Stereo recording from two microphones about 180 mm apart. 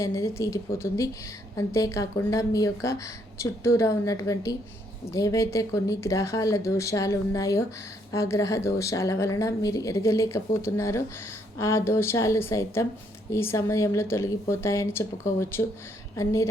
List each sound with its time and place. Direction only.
0.0 s a woman's voice: 15° left (ahead or behind)